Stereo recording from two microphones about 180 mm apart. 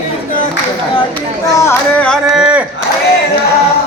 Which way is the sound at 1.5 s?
15° left (ahead or behind).